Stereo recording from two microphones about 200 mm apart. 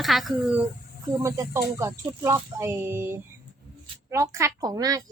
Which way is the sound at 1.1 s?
15° right (ahead or behind).